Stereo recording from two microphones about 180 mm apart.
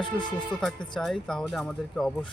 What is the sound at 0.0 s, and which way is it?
Speech, 25° left (ahead or behind).